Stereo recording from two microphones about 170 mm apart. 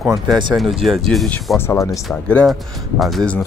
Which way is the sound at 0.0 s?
Centre (ahead or behind).